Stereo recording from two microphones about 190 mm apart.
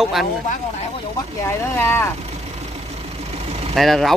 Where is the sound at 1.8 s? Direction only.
15° left (ahead or behind).